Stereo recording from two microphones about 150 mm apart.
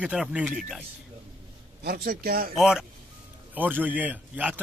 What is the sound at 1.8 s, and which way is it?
Speech, 90° right.